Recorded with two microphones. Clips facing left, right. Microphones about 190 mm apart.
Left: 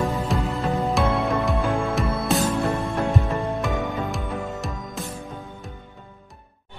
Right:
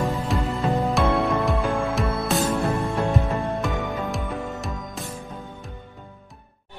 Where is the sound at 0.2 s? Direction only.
Centre (ahead or behind).